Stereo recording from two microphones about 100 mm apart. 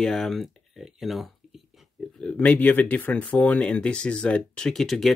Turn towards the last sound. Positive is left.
turn(degrees=0)  # may be behind; listen again after turning